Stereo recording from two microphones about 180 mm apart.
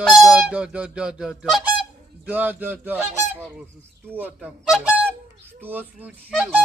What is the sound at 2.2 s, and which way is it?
Goose, 10° right (ahead or behind).